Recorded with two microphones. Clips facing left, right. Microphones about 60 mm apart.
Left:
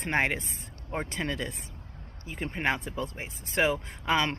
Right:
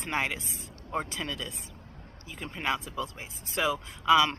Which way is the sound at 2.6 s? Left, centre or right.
Left.